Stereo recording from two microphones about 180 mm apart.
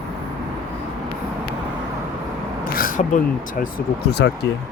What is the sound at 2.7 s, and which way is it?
Speech, 50° left (ahead or behind).